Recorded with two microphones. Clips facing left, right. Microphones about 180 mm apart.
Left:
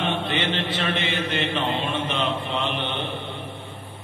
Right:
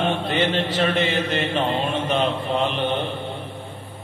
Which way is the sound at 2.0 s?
45° right (ahead or behind).